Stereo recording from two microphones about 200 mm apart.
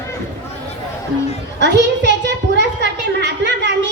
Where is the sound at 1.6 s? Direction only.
60° right (ahead or behind).